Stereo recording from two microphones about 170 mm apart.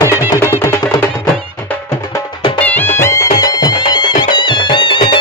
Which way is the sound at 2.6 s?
10° left (ahead or behind).